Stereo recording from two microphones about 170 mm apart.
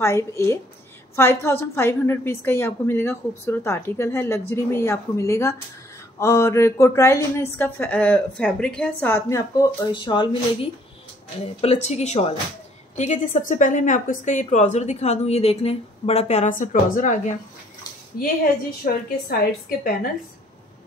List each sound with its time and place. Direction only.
0.0 s a woman's voice: 15° left (ahead or behind)
11.6 s a woman's voice: 40° left (ahead or behind)
18.2 s a woman's voice: 60° left (ahead or behind)